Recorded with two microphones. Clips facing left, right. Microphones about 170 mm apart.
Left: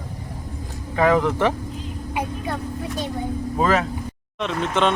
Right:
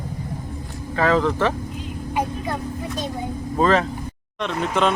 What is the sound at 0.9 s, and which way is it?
Speech, 15° left (ahead or behind).